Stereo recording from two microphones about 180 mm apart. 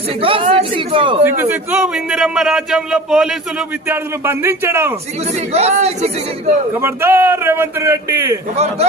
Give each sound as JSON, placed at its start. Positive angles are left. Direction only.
{"t": 0.2, "sound": "speech", "side_deg": -30}
{"t": 1.2, "sound": "a man's voice", "side_deg": -10}
{"t": 5.5, "sound": "a man's voice", "side_deg": -35}
{"t": 6.7, "sound": "a man's voice", "side_deg": -10}
{"t": 8.5, "sound": "a man's voice", "side_deg": -35}